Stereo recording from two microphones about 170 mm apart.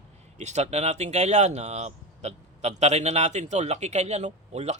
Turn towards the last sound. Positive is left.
turn(degrees=-40)  # may be behind; listen again after turning